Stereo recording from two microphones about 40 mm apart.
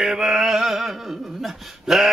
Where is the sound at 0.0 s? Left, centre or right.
Centre.